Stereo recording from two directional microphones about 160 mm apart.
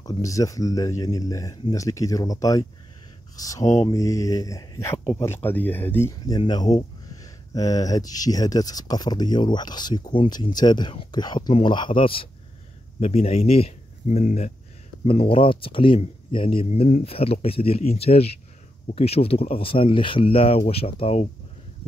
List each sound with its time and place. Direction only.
0.0 s speech: 20° left (ahead or behind); by 21.3 s 40° left (ahead or behind)